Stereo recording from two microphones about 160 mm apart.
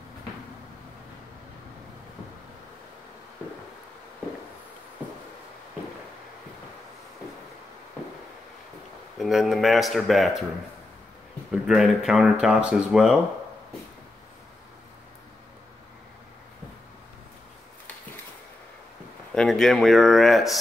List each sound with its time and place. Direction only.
9.2 s speech: centre (ahead or behind)
11.6 s speech: 5° right (ahead or behind)
19.3 s speech: 5° left (ahead or behind)